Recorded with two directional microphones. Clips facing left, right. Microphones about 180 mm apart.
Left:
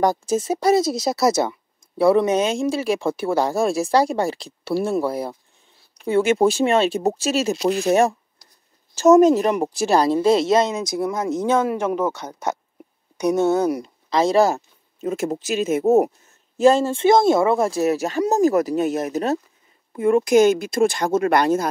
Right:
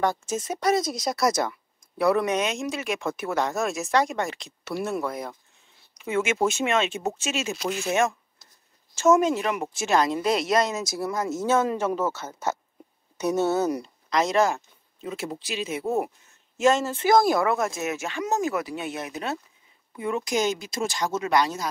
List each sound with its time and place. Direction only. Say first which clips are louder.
0.0 s a woman's voice: left 6 dB; 35° left (ahead or behind); by 12.1 s 10° left (ahead or behind)
13.4 s speech: left 4 dB; 5° right (ahead or behind)
14.1 s speech: left 5 dB; 35° left (ahead or behind)
16.5 s a woman's voice: left 6 dB; 35° left (ahead or behind)
20.0 s speech: left 11 dB; 50° left (ahead or behind)